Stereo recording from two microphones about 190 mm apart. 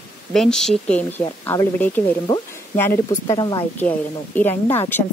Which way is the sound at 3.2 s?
20° left (ahead or behind).